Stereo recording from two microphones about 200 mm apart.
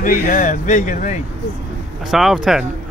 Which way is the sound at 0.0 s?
40° left (ahead or behind).